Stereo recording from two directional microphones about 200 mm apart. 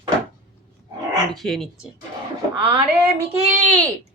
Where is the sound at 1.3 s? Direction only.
Centre (ahead or behind).